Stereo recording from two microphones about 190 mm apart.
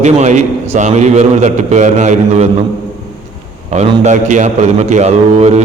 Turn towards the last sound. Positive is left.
turn(degrees=-35)  # may be behind; listen again after turning